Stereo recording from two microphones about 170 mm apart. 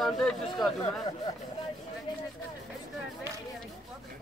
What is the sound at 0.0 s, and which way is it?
Speech, centre (ahead or behind).